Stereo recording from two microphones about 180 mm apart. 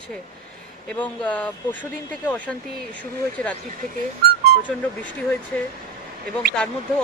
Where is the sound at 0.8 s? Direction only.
10° left (ahead or behind).